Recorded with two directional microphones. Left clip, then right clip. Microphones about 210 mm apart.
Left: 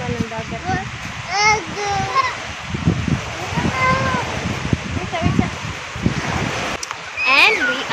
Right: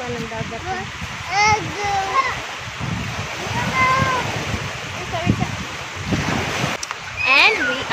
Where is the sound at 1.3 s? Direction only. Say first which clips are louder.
Left 1 dB; 20° left (ahead or behind).